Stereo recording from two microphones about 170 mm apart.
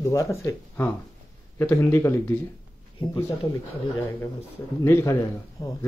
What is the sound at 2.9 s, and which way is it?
Speech, 30° left (ahead or behind).